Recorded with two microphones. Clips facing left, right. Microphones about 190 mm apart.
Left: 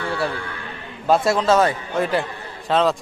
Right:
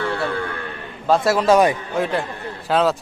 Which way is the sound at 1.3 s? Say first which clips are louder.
Right 4 dB; 10° right (ahead or behind).